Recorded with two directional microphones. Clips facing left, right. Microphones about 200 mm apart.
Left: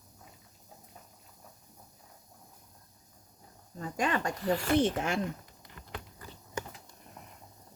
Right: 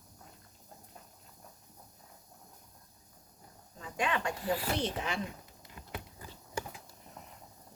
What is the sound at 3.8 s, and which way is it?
Speech, 40° left (ahead or behind).